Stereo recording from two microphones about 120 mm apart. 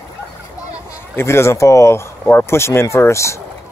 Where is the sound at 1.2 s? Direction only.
20° left (ahead or behind).